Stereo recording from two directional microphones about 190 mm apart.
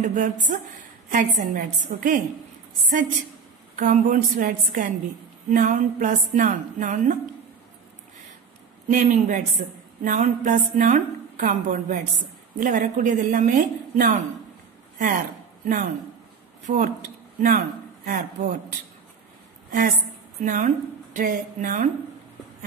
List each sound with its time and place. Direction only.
0.0 s a woman's voice: 40° right (ahead or behind)
3.7 s a woman's voice: 45° right (ahead or behind)
8.8 s a woman's voice: 40° right (ahead or behind)
15.6 s a man's voice: 45° right (ahead or behind)
20.3 s speech: 45° right (ahead or behind)